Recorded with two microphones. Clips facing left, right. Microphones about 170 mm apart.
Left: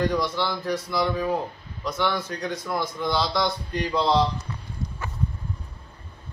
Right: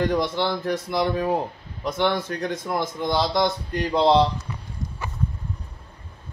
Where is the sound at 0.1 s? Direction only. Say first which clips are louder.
Right 3 dB; 50° right (ahead or behind).